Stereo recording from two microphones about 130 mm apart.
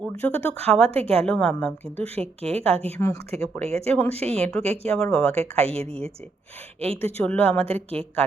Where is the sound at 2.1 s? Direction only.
50° right (ahead or behind).